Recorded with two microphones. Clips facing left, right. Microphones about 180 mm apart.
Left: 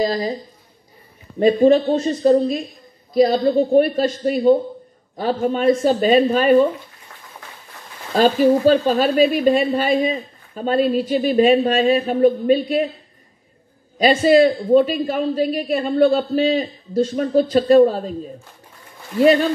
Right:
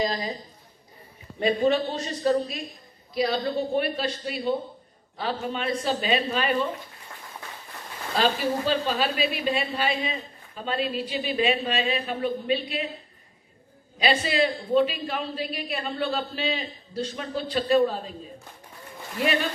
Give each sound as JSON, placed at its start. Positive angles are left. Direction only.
{"t": 0.0, "sound": "a woman's voice", "side_deg": 35}
{"t": 1.4, "sound": "speech", "side_deg": 40}
{"t": 8.2, "sound": "speech", "side_deg": 45}
{"t": 13.9, "sound": "speech", "side_deg": 45}
{"t": 19.1, "sound": "a woman's voice", "side_deg": 40}